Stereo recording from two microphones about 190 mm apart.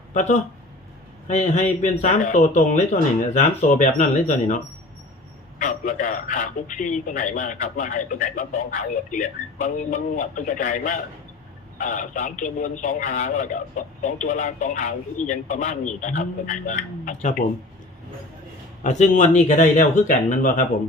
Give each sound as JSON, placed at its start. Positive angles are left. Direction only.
{"t": 0.1, "sound": "a man's voice", "side_deg": 40}
{"t": 18.8, "sound": "a man's voice", "side_deg": 40}